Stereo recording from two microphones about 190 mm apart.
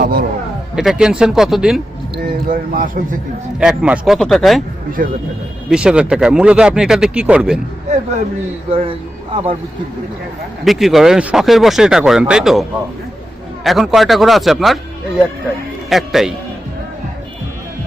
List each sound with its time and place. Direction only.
0.0 s a sound: 50° right (ahead or behind)
0.8 s speech: 5° right (ahead or behind)
2.1 s speech: 50° right (ahead or behind)
3.6 s speech: 5° right (ahead or behind)
5.0 s speech: 50° right (ahead or behind)
5.6 s speech: 5° right (ahead or behind)
8.7 s speech: 30° right (ahead or behind)
10.6 s speech: centre (ahead or behind)
13.7 s speech: centre (ahead or behind)
15.9 s speech: centre (ahead or behind)